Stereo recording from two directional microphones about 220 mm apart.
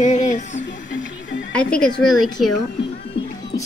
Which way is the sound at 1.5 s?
5° left (ahead or behind).